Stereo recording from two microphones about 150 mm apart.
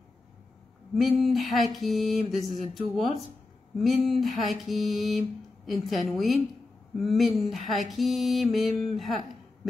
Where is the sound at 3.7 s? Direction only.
Centre (ahead or behind).